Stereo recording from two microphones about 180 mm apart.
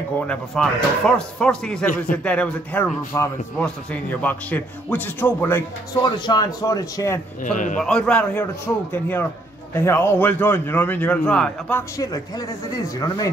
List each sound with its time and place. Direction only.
0.3 s a man's voice: 5° left (ahead or behind)
6.0 s speech: 25° left (ahead or behind)
7.5 s a man's voice: 45° left (ahead or behind)
7.8 s a man's voice: 5° left (ahead or behind)
12.0 s speech: 20° left (ahead or behind)